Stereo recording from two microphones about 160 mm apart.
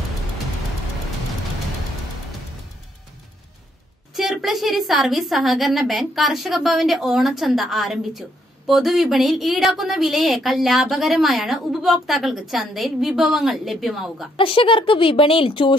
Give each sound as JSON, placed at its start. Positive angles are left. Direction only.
{"t": 4.1, "sound": "a woman's voice", "side_deg": 0}
{"t": 14.3, "sound": "speech", "side_deg": 35}